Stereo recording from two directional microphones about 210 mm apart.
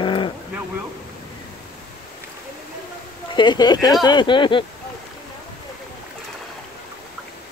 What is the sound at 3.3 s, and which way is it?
Speech, 20° left (ahead or behind).